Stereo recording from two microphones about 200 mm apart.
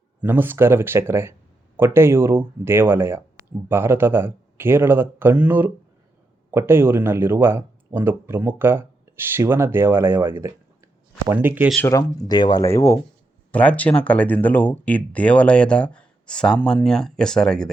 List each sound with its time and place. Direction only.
0.2 s speech: 10° right (ahead or behind)
11.8 s speech: 15° left (ahead or behind)